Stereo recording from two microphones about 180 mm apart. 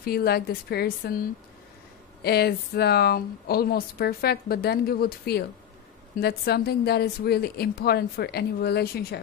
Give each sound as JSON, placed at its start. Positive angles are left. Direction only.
{"t": 0.0, "sound": "speech", "side_deg": 60}
{"t": 2.2, "sound": "speech", "side_deg": 60}